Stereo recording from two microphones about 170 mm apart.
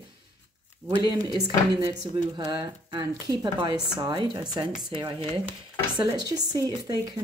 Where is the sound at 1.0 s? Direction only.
25° right (ahead or behind).